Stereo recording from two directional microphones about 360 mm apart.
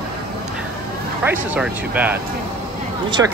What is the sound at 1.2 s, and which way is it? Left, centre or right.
Speech, centre.